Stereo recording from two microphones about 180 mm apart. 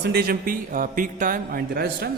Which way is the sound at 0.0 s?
60° right (ahead or behind).